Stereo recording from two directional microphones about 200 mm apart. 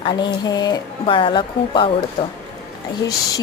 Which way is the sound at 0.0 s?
25° left (ahead or behind).